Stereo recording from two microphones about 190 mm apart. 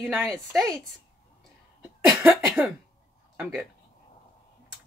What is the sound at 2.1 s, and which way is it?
Speech, 10° right (ahead or behind).